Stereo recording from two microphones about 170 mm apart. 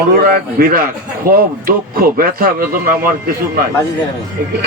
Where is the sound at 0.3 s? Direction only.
60° right (ahead or behind).